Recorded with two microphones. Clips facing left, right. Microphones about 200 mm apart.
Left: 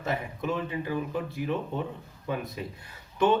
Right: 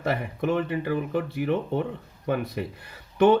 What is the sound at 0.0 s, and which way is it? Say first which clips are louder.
Speech: right 5 dB; 70° right (ahead or behind).